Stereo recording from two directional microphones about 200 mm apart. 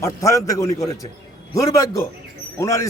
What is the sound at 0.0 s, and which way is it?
A man's voice, 15° left (ahead or behind).